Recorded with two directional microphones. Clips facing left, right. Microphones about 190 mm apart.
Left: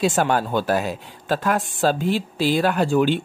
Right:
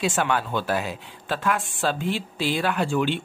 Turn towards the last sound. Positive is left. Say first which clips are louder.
# left 5 dB
turn(degrees=40)  # may be behind; listen again after turning